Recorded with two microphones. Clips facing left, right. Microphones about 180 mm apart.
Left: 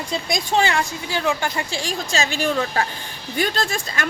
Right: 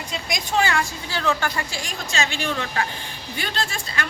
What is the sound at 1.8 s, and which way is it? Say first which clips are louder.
A woman's voice: left 4 dB; 35° left (ahead or behind).